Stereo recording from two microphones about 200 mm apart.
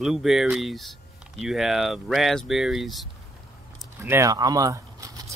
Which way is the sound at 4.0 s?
15° right (ahead or behind).